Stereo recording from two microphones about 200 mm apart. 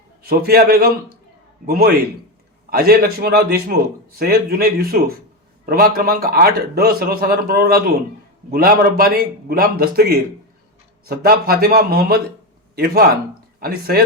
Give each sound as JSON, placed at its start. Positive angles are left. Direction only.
{"t": 0.2, "sound": "a man's voice", "side_deg": -50}